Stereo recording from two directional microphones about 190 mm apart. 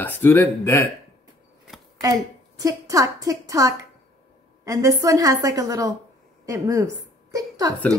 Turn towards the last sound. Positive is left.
turn(degrees=-20)  # may be behind; listen again after turning